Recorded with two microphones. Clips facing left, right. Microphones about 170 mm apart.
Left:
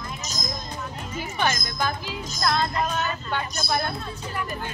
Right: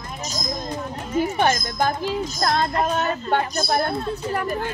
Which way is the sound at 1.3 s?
45° right (ahead or behind).